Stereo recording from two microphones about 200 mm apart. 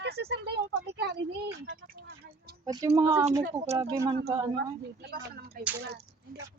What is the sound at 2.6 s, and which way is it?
Speech, 15° right (ahead or behind).